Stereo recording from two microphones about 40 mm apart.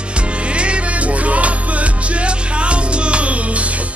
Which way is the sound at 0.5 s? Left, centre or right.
Right.